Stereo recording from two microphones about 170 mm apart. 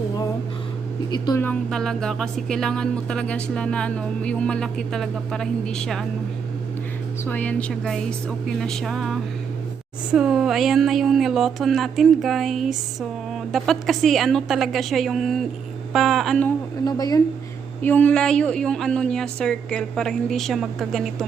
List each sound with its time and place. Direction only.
1.1 s speech: 25° left (ahead or behind)
1.4 s speech: 5° left (ahead or behind)
7.3 s speech: 10° left (ahead or behind)
16.8 s speech: 20° left (ahead or behind)
17.8 s speech: 10° left (ahead or behind)